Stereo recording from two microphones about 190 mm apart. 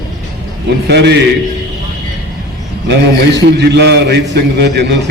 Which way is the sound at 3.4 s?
65° right (ahead or behind).